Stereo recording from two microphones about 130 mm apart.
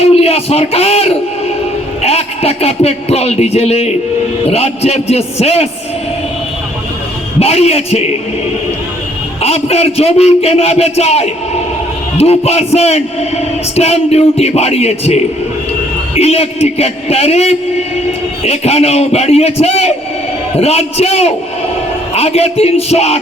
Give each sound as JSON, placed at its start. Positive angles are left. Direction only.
{"t": 0.0, "sound": "a man's voice", "side_deg": 50}
{"t": 7.3, "sound": "a man's voice", "side_deg": 55}
{"t": 9.4, "sound": "a man's voice", "side_deg": 50}